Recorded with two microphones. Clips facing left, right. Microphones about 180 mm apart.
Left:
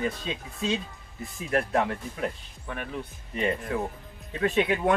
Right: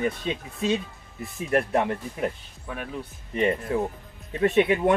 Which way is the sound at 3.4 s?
20° right (ahead or behind).